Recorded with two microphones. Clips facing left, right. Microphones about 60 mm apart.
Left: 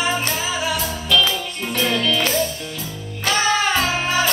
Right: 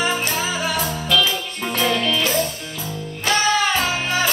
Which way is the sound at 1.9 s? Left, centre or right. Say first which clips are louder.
Even; right.